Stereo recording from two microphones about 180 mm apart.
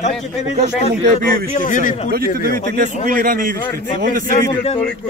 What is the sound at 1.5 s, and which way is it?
Speech, 45° left (ahead or behind).